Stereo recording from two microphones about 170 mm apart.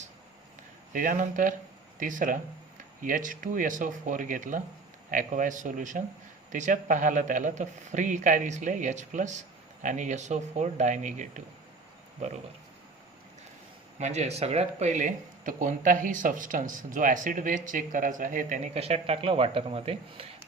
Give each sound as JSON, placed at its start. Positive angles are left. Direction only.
{"t": 0.9, "sound": "speech", "side_deg": -50}
{"t": 14.0, "sound": "speech", "side_deg": -40}